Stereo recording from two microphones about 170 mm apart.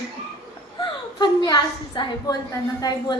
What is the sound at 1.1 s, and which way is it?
A woman's voice, 25° left (ahead or behind).